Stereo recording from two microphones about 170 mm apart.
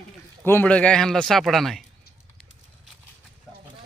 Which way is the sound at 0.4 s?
10° left (ahead or behind).